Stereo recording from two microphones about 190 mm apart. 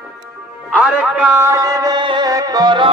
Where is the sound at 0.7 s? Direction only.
5° right (ahead or behind).